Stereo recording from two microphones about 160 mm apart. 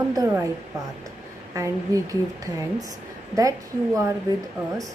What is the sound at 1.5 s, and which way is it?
Speech, 20° right (ahead or behind).